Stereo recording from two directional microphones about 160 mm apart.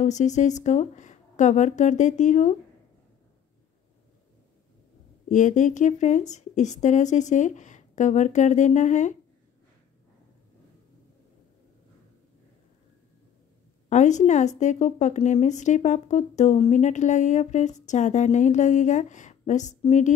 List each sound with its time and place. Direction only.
0.0 s a woman's voice: 50° left (ahead or behind)
5.3 s a woman's voice: 50° left (ahead or behind)
13.8 s a woman's voice: 50° left (ahead or behind)